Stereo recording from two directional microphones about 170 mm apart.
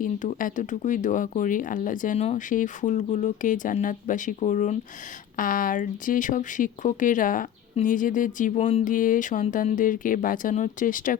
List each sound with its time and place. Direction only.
0.0 s speech: 50° left (ahead or behind)